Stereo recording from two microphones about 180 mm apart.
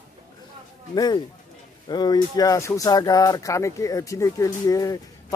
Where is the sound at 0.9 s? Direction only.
25° left (ahead or behind).